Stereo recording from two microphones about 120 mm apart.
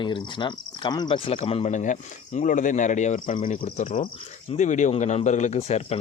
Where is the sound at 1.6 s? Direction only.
90° left.